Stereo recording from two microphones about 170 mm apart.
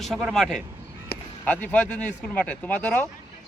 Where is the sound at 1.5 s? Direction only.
10° left (ahead or behind).